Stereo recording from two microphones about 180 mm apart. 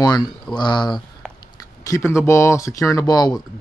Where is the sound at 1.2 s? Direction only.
5° left (ahead or behind).